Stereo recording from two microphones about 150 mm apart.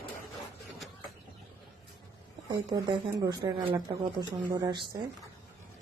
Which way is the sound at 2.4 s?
30° right (ahead or behind).